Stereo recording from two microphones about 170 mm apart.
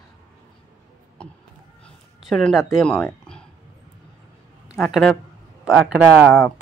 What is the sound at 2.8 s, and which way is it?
Speech, 5° left (ahead or behind).